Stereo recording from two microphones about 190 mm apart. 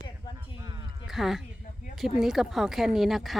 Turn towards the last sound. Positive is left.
turn(degrees=0)  # may be behind; listen again after turning